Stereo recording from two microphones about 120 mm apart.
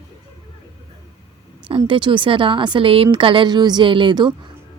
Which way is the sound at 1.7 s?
45° right (ahead or behind).